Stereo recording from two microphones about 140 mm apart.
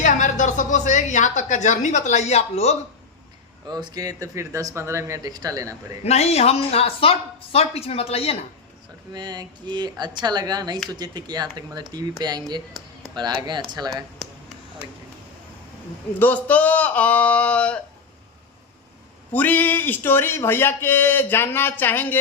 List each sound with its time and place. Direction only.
0.0 s a woman's voice: 65° left (ahead or behind)
3.7 s speech: 30° right (ahead or behind)
6.1 s speech: 50° left (ahead or behind)
9.1 s speech: 30° right (ahead or behind)
16.1 s speech: 10° left (ahead or behind)
19.3 s speech: 10° left (ahead or behind)